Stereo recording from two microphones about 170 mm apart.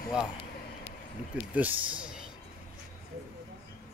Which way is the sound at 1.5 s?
10° right (ahead or behind).